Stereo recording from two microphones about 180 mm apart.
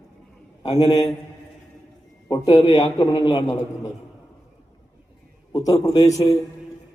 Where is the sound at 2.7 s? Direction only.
20° left (ahead or behind).